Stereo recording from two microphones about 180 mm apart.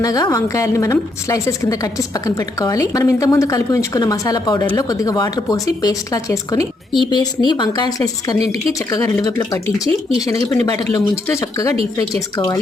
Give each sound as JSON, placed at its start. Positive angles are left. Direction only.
{"t": 0.0, "sound": "a woman's voice", "side_deg": 20}